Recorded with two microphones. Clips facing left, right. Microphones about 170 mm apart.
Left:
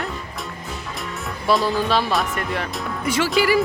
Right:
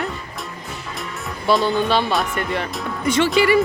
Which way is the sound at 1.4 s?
Centre (ahead or behind).